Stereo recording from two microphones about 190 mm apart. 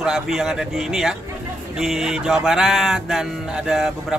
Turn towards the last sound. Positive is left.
turn(degrees=0)  # may be behind; listen again after turning